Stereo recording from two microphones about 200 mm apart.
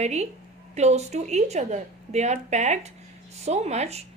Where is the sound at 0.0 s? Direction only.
35° right (ahead or behind).